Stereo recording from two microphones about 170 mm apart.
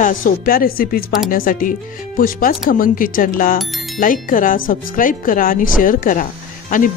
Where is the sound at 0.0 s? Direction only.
55° left (ahead or behind).